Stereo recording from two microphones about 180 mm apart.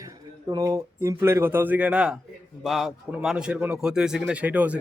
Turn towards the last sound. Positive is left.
turn(degrees=-10)  # may be behind; listen again after turning